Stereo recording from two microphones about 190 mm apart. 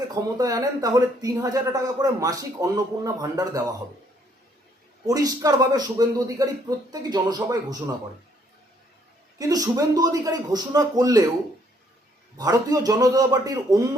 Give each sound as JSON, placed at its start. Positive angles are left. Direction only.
{"t": 0.1, "sound": "speech", "side_deg": -20}
{"t": 5.0, "sound": "speech", "side_deg": -20}
{"t": 9.4, "sound": "speech", "side_deg": -20}
{"t": 12.4, "sound": "speech", "side_deg": -20}